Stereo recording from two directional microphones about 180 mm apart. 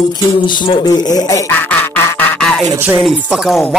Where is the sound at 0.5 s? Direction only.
25° left (ahead or behind); by 2.7 s 5° left (ahead or behind).